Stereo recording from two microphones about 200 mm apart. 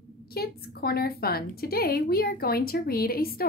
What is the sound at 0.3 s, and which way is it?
A woman's voice, 50° left (ahead or behind).